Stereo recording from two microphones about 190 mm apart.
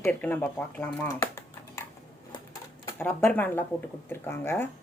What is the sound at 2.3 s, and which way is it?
Typewriter, 20° left (ahead or behind).